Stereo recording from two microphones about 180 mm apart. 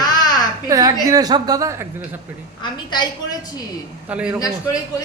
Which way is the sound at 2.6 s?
25° left (ahead or behind).